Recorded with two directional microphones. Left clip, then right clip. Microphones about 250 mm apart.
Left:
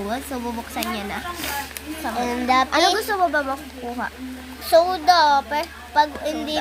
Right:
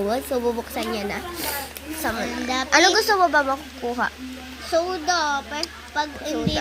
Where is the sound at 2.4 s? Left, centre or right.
Left.